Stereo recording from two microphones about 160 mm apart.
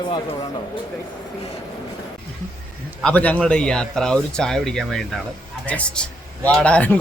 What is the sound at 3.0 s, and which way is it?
Speech, 10° left (ahead or behind).